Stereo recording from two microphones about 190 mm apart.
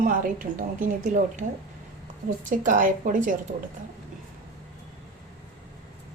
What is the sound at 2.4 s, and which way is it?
Speech, 45° right (ahead or behind).